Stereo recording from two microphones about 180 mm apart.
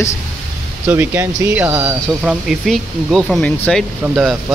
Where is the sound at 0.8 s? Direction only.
10° right (ahead or behind).